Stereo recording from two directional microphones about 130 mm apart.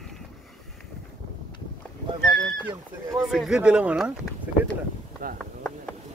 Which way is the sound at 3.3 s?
5° right (ahead or behind).